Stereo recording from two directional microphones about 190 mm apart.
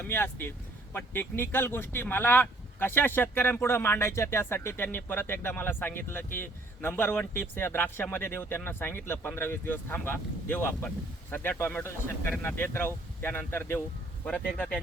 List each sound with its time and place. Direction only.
0.0 s speech: 10° left (ahead or behind)